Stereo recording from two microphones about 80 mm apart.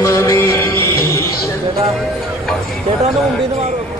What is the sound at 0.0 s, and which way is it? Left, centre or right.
Music, left.